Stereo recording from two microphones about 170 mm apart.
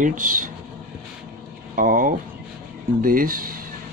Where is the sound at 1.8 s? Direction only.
55° right (ahead or behind).